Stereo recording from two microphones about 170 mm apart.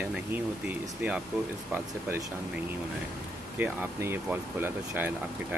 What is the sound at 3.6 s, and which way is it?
Speech, 15° right (ahead or behind).